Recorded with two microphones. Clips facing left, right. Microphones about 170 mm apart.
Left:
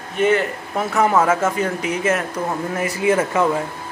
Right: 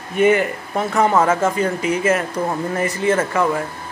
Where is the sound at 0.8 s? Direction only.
5° left (ahead or behind).